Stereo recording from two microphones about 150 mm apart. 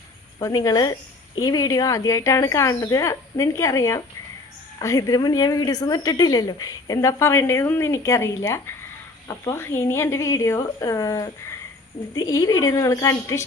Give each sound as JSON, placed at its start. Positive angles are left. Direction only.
{"t": 0.3, "sound": "a woman's voice", "side_deg": 25}